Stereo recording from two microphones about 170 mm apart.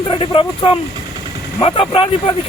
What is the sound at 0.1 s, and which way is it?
Speech, 30° left (ahead or behind).